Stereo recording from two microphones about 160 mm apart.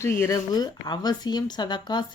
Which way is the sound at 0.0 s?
20° left (ahead or behind).